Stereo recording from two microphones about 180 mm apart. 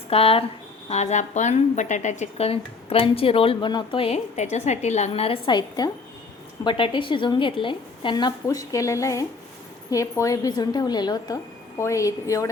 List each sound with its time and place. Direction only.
0.1 s a woman's voice: 30° left (ahead or behind)